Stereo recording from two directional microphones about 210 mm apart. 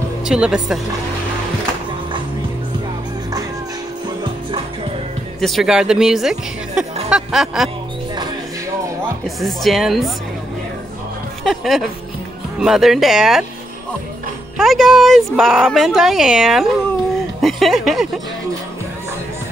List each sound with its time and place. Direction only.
0.2 s speech: 5° right (ahead or behind)
4.2 s music: 25° right (ahead or behind)
5.4 s speech: centre (ahead or behind)
9.4 s speech: centre (ahead or behind)
11.4 s speech: centre (ahead or behind)
14.6 s speech: centre (ahead or behind)